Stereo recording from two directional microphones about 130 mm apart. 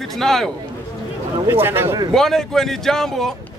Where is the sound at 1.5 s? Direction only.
20° right (ahead or behind).